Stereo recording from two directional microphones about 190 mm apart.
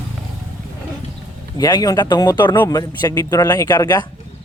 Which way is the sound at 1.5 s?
20° left (ahead or behind).